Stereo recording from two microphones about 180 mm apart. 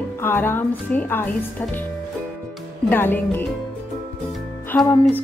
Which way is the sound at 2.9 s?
10° left (ahead or behind).